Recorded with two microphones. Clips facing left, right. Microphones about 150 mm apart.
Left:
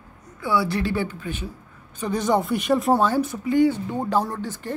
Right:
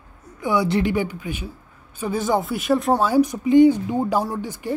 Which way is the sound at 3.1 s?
15° right (ahead or behind).